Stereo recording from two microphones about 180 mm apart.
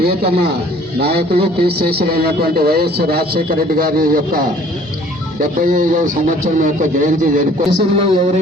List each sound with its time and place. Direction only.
0.0 s a man's voice: 65° right (ahead or behind); by 7.4 s 45° right (ahead or behind)
7.8 s speech: 35° right (ahead or behind)